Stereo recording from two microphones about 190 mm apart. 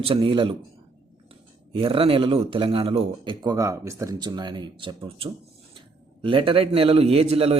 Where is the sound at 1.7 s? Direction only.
30° right (ahead or behind).